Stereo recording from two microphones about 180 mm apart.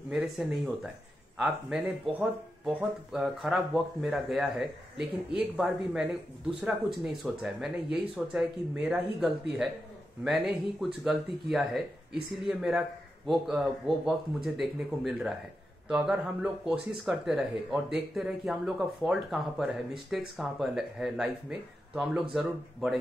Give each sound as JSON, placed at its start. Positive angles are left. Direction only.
{"t": 0.1, "sound": "speech", "side_deg": -5}